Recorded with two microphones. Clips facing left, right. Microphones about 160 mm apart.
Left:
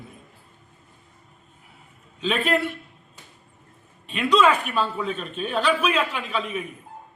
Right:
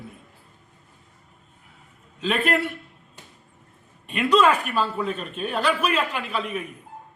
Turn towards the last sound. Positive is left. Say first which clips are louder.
# even
turn(degrees=-5)  # may be behind; listen again after turning